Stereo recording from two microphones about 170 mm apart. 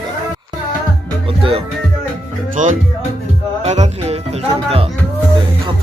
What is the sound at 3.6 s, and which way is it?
Music, 40° right (ahead or behind).